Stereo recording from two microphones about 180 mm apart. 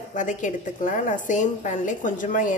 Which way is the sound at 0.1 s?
45° left (ahead or behind).